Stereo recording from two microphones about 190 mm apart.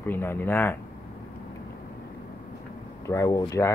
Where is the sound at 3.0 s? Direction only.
15° left (ahead or behind).